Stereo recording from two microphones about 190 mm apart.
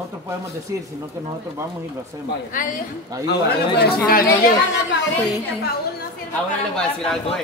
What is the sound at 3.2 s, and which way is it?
A man's voice, 55° left (ahead or behind).